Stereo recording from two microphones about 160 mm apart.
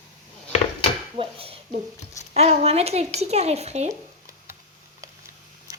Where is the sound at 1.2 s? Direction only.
35° right (ahead or behind).